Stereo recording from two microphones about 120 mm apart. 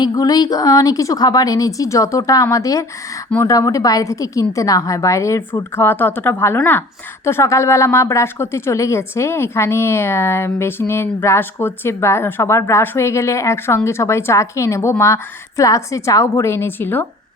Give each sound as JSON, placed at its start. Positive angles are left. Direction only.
{"t": 0.0, "sound": "a woman's voice", "side_deg": 35}